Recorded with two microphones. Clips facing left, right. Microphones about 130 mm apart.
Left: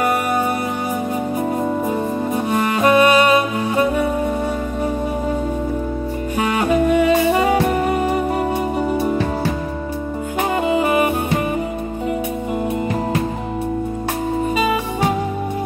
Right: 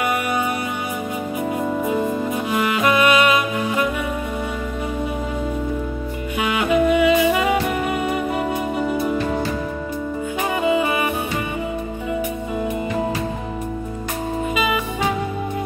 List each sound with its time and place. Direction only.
1.6 s music: 35° left (ahead or behind)
6.3 s music: 40° left (ahead or behind)
10.6 s music: 40° left (ahead or behind)